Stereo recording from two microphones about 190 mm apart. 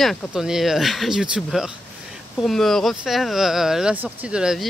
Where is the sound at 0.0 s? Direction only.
Centre (ahead or behind).